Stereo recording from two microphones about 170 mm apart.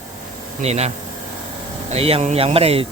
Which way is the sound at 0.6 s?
40° right (ahead or behind).